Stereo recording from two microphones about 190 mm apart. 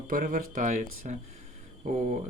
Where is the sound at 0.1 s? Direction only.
45° right (ahead or behind).